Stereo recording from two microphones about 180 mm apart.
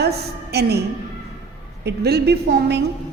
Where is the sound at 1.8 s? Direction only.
65° right (ahead or behind).